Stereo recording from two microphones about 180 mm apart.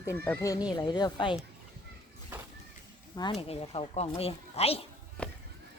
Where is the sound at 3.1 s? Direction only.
25° left (ahead or behind).